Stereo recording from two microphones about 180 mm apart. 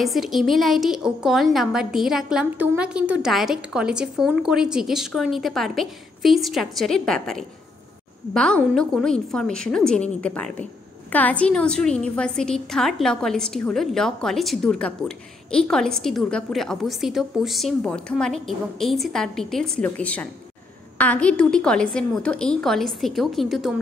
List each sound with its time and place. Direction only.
0.0 s a woman's voice: centre (ahead or behind)